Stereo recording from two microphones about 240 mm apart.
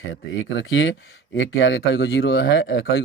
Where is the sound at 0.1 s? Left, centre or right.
Left.